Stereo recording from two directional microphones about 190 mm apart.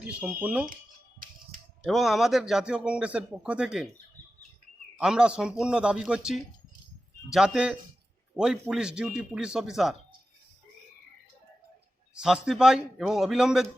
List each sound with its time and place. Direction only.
0.0 s speech: 5° right (ahead or behind)
1.2 s a sound: 45° right (ahead or behind)
1.9 s speech: centre (ahead or behind)
4.9 s speech: 5° right (ahead or behind)
12.1 s speech: 5° right (ahead or behind)